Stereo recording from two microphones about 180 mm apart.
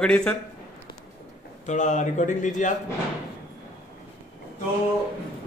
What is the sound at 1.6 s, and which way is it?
Speech, 45° left (ahead or behind).